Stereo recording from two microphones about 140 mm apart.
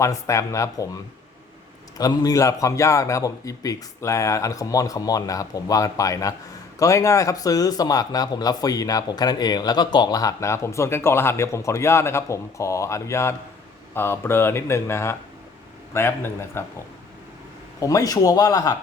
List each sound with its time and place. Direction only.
0.0 s a man's voice: 20° left (ahead or behind)
2.0 s a man's voice: 25° left (ahead or behind)
17.7 s a man's voice: 25° left (ahead or behind)